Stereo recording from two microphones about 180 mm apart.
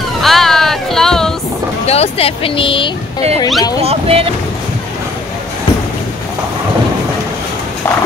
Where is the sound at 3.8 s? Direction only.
35° right (ahead or behind).